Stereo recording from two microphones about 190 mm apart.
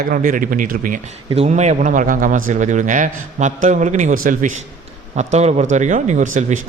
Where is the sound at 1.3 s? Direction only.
35° right (ahead or behind).